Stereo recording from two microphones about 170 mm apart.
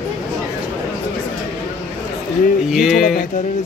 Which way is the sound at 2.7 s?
Centre (ahead or behind).